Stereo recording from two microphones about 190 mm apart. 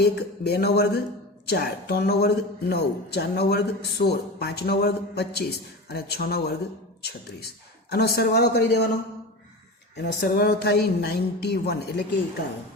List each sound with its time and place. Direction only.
0.0 s speech: 60° left (ahead or behind)
10.2 s speech: 55° left (ahead or behind)